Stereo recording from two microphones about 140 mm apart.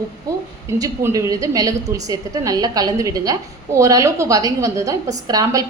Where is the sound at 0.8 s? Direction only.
25° right (ahead or behind).